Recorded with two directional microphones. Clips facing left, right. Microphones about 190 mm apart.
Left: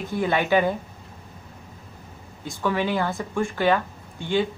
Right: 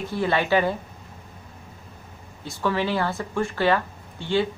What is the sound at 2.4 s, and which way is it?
Speech, 15° left (ahead or behind).